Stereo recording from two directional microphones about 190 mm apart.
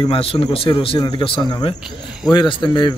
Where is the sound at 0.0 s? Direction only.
30° left (ahead or behind).